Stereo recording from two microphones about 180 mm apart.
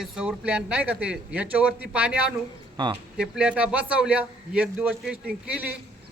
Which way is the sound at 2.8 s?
25° right (ahead or behind).